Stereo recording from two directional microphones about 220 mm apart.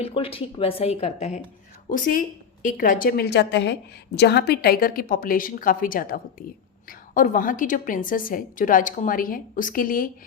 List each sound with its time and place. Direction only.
0.0 s a woman's voice: 25° left (ahead or behind); by 10.1 s 40° left (ahead or behind)